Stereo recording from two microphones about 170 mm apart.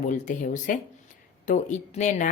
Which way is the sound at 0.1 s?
45° left (ahead or behind).